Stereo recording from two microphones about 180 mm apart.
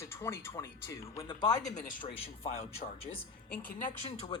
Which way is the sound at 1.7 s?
50° left (ahead or behind).